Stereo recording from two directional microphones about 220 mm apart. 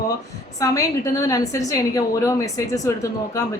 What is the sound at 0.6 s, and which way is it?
A woman's voice, 15° left (ahead or behind).